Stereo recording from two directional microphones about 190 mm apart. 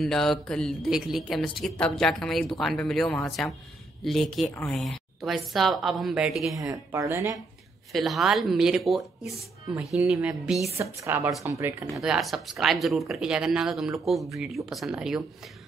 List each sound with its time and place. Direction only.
0.0 s speech: centre (ahead or behind)
6.6 s speech: 15° right (ahead or behind)
7.9 s speech: centre (ahead or behind)
11.9 s speech: centre (ahead or behind)